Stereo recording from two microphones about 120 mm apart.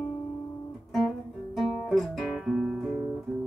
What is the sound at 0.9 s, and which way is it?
Guitar, centre (ahead or behind).